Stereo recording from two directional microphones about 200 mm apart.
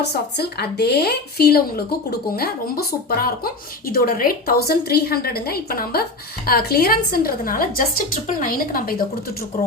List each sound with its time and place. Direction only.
0.0 s speech: 55° left (ahead or behind)